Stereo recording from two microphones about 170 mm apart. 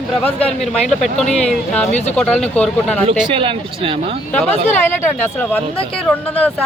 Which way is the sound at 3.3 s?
30° right (ahead or behind).